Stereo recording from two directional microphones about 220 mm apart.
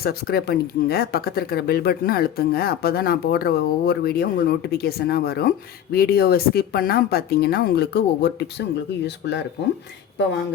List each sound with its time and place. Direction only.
0.0 s speech: 45° left (ahead or behind)